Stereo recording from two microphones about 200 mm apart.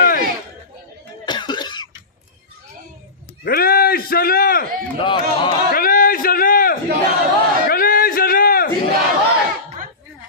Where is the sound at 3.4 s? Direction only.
50° left (ahead or behind).